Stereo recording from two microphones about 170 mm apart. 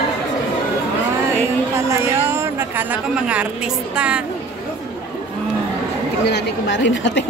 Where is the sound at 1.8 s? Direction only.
15° right (ahead or behind).